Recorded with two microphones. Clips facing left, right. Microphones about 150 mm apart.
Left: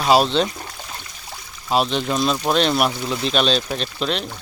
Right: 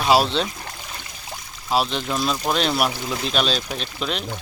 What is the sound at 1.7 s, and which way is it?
Speech, centre (ahead or behind).